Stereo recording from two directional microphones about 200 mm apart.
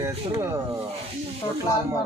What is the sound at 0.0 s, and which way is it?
Speech, 15° right (ahead or behind).